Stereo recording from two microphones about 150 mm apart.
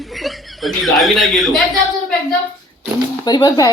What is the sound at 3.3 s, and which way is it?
Speech, 30° left (ahead or behind).